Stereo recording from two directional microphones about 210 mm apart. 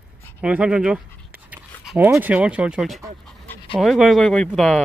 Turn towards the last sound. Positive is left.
turn(degrees=0)  # may be behind; listen again after turning